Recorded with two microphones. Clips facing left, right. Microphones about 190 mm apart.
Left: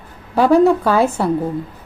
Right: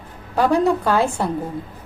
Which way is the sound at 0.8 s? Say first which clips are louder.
Left 3 dB; 5° left (ahead or behind).